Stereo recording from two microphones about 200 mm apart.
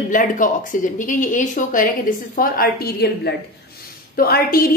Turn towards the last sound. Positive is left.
turn(degrees=50)  # may be behind; listen again after turning